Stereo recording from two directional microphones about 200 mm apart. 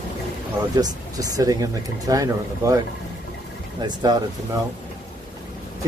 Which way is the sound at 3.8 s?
20° right (ahead or behind).